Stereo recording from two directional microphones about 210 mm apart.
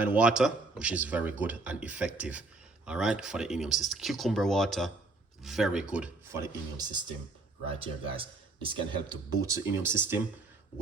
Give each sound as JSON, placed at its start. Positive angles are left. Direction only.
{"t": 0.0, "sound": "speech", "side_deg": -5}
{"t": 7.7, "sound": "speech", "side_deg": -25}